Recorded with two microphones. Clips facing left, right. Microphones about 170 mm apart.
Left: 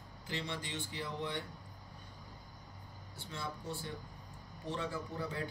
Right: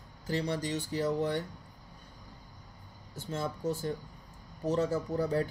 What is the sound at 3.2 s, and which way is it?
Speech, 45° right (ahead or behind).